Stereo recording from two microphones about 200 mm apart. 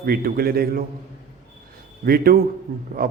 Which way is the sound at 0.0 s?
50° right (ahead or behind).